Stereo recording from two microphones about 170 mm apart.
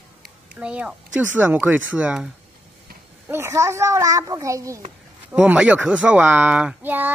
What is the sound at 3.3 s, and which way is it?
Speech, 15° right (ahead or behind).